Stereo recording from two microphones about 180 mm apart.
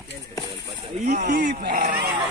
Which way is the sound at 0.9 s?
40° right (ahead or behind).